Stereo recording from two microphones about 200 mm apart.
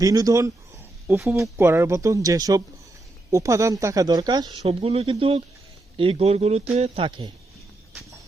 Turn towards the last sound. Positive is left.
turn(degrees=-25)  # may be behind; listen again after turning